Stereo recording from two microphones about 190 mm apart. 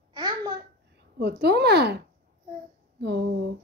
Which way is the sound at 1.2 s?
60° right (ahead or behind).